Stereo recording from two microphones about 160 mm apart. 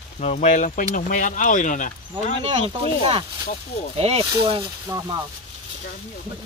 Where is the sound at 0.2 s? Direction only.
45° left (ahead or behind).